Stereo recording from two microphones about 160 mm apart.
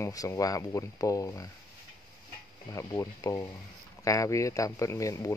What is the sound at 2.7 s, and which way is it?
Speech, 20° left (ahead or behind).